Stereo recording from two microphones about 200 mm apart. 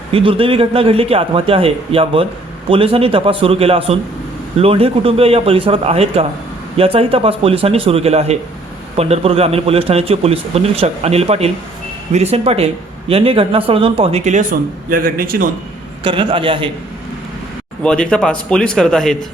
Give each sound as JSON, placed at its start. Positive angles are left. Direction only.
{"t": 0.1, "sound": "speech", "side_deg": -25}
{"t": 14.8, "sound": "a man's voice", "side_deg": -45}
{"t": 16.0, "sound": "speech", "side_deg": -25}
{"t": 17.8, "sound": "speech", "side_deg": 5}